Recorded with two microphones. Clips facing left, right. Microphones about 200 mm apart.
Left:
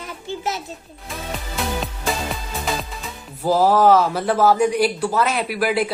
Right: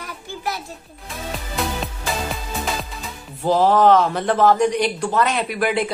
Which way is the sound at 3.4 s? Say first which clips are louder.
Even; 5° left (ahead or behind).